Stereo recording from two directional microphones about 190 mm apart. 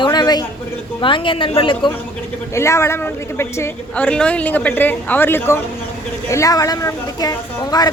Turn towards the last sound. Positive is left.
turn(degrees=20)  # may be behind; listen again after turning